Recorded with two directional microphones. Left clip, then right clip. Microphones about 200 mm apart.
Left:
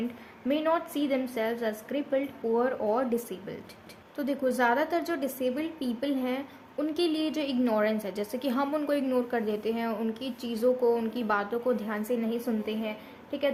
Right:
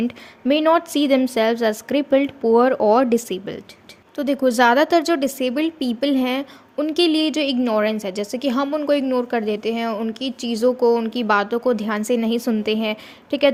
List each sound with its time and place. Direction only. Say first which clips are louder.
0.4 s a woman's voice: right 11 dB; 45° right (ahead or behind)